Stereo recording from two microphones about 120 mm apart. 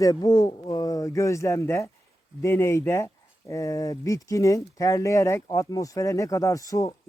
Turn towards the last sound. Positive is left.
turn(degrees=30)  # may be behind; listen again after turning